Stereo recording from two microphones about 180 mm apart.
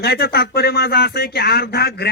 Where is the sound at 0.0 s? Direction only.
65° left (ahead or behind).